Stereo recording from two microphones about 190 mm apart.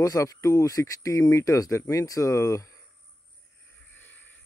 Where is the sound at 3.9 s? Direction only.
10° left (ahead or behind).